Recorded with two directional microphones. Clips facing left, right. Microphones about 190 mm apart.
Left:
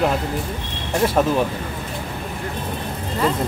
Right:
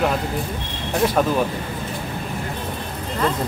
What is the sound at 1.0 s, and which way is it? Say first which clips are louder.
Speech: left 1 dB; centre (ahead or behind).